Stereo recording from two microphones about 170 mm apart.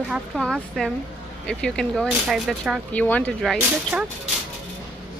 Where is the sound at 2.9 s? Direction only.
10° left (ahead or behind).